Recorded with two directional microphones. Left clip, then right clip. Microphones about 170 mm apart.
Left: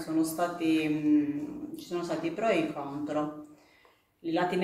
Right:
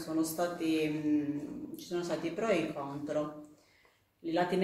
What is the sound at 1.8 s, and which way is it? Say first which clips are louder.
Speech: left 2 dB; 15° right (ahead or behind).